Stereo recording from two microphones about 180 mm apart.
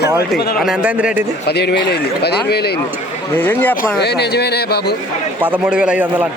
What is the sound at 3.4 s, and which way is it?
Speech, 10° left (ahead or behind).